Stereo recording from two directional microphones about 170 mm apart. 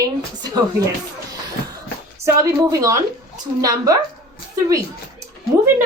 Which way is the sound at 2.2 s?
20° right (ahead or behind).